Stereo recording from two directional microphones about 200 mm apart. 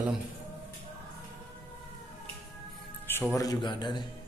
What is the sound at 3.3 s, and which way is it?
Speech, 20° left (ahead or behind).